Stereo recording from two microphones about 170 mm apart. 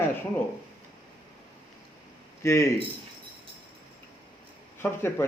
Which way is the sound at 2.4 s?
15° left (ahead or behind).